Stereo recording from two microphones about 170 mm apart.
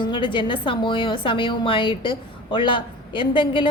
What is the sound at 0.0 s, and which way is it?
A woman's voice, 30° left (ahead or behind).